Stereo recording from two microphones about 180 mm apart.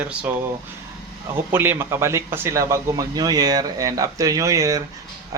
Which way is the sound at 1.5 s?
10° right (ahead or behind).